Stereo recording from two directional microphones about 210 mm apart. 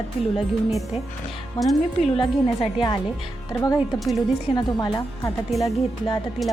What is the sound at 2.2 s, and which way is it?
Speech, 25° left (ahead or behind).